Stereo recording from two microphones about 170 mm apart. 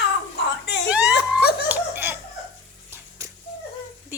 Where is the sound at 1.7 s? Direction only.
15° right (ahead or behind).